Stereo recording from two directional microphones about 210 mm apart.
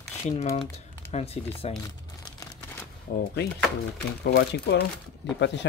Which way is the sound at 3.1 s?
45° left (ahead or behind).